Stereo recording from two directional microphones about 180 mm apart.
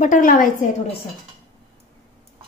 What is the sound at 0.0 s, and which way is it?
Speech, 45° left (ahead or behind).